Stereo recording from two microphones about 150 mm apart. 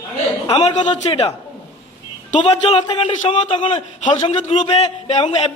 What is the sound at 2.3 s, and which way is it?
A man's voice, 50° left (ahead or behind).